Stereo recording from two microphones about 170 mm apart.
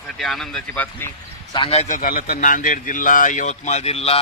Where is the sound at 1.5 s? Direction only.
30° left (ahead or behind).